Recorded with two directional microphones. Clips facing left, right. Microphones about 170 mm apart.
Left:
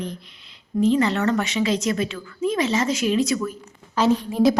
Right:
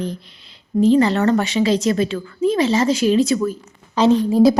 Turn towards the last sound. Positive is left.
turn(degrees=-30)  # may be behind; listen again after turning